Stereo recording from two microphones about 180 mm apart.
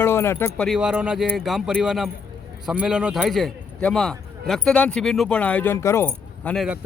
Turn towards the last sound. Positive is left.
turn(degrees=5)  # may be behind; listen again after turning